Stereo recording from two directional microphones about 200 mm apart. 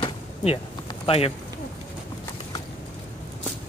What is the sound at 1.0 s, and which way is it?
Speech, 30° left (ahead or behind).